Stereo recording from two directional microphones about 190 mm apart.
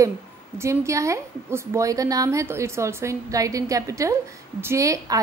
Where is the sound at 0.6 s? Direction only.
15° right (ahead or behind).